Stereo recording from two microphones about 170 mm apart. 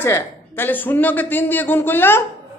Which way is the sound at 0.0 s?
15° left (ahead or behind).